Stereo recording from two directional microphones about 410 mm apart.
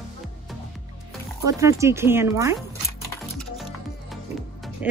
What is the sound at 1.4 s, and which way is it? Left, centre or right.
Speech, centre.